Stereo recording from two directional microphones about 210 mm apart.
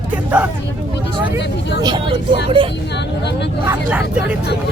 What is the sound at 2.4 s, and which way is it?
Speech, 25° right (ahead or behind).